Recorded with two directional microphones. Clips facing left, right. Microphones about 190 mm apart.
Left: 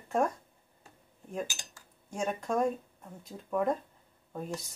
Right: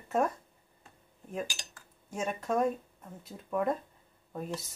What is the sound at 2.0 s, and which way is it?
Speech, 5° right (ahead or behind).